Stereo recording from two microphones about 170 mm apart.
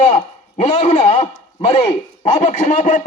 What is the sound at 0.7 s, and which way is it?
A man's voice, 40° left (ahead or behind).